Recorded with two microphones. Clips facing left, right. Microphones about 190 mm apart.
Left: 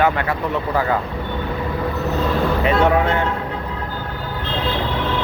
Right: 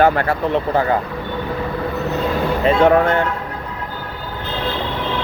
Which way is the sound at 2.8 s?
30° right (ahead or behind).